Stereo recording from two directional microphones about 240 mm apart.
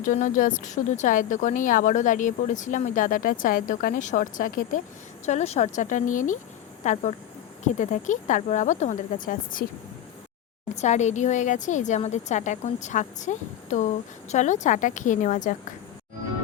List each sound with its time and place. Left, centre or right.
0.0 s a woman's voice: left
10.8 s a woman's voice: left